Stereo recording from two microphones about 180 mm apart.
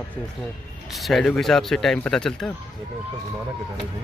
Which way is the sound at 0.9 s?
Centre (ahead or behind).